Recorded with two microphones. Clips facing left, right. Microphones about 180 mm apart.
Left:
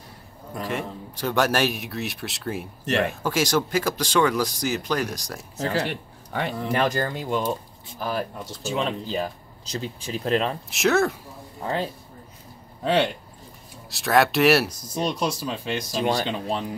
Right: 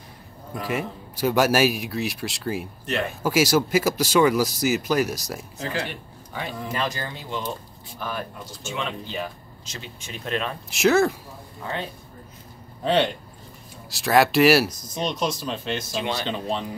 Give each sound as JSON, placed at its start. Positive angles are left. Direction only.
{"t": 0.6, "sound": "speech", "side_deg": -5}
{"t": 5.6, "sound": "speech", "side_deg": 40}
{"t": 5.9, "sound": "speech", "side_deg": 70}
{"t": 8.0, "sound": "speech", "side_deg": 35}
{"t": 10.7, "sound": "speech", "side_deg": 0}
{"t": 11.6, "sound": "speech", "side_deg": 35}
{"t": 12.8, "sound": "speech", "side_deg": 5}
{"t": 16.0, "sound": "speech", "side_deg": 40}
{"t": 16.3, "sound": "speech", "side_deg": 5}